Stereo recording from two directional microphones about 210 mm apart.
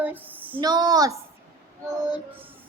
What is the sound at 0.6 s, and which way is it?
Speech, 20° right (ahead or behind).